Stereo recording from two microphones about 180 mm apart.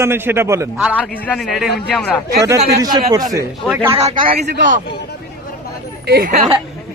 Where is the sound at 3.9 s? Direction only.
35° right (ahead or behind).